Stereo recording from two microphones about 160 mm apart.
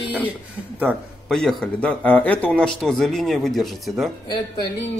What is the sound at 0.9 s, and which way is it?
Speech, 10° right (ahead or behind).